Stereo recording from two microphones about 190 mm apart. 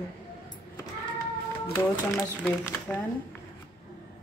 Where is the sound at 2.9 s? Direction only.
10° left (ahead or behind).